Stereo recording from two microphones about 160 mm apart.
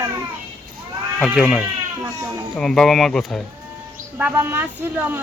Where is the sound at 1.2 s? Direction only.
Centre (ahead or behind).